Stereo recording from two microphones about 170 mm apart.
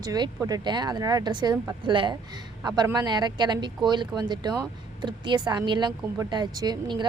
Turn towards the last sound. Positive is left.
turn(degrees=-25)  # may be behind; listen again after turning